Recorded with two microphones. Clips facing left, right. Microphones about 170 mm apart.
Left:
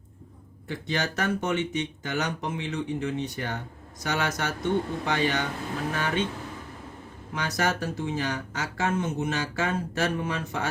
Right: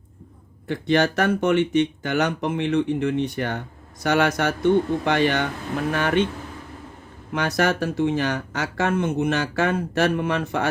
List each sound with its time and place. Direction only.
0.7 s speech: 60° right (ahead or behind)
7.3 s speech: 65° right (ahead or behind)